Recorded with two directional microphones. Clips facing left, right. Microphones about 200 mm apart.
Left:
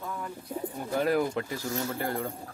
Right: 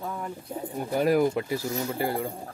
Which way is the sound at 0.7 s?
15° right (ahead or behind).